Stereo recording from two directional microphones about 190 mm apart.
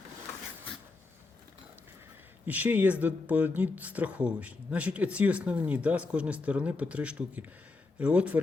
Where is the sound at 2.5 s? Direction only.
10° right (ahead or behind).